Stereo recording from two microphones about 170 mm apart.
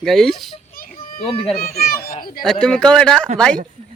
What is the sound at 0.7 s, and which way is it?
Children playing, 60° left (ahead or behind).